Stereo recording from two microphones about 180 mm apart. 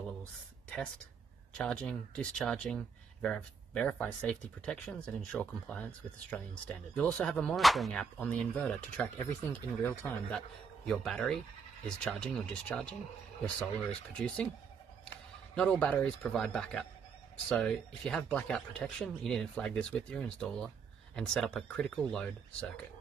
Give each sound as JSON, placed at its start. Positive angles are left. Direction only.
{"t": 1.5, "sound": "speech", "side_deg": 5}
{"t": 14.1, "sound": "speech", "side_deg": 5}
{"t": 15.5, "sound": "speech", "side_deg": 5}